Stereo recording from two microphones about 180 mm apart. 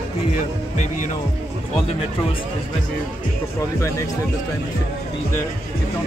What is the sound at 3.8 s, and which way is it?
Speech, 15° left (ahead or behind).